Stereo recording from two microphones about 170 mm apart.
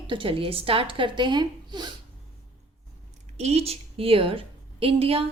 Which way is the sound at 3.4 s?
35° right (ahead or behind).